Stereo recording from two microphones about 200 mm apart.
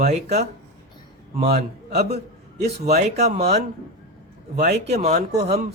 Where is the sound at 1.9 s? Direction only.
55° right (ahead or behind).